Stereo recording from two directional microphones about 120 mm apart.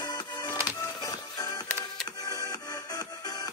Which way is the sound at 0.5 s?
15° right (ahead or behind).